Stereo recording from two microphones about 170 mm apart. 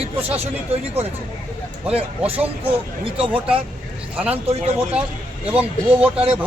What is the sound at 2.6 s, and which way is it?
Speech, 30° right (ahead or behind).